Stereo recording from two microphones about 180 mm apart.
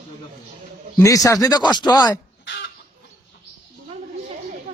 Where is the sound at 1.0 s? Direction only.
20° left (ahead or behind).